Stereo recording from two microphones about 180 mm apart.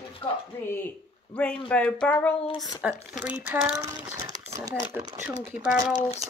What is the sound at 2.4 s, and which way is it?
Speech, 20° left (ahead or behind).